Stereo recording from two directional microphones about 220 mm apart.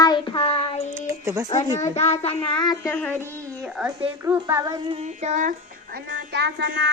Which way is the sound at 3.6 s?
10° right (ahead or behind).